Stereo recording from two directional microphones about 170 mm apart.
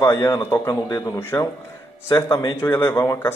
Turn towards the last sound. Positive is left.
turn(degrees=15)  # may be behind; listen again after turning